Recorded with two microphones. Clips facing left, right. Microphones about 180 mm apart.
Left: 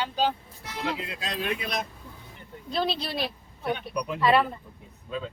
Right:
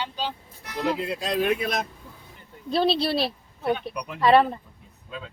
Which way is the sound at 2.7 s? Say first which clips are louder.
Right 6 dB; 30° right (ahead or behind).